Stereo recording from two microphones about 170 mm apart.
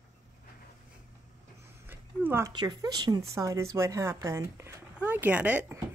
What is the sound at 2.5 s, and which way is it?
Speech, 25° right (ahead or behind).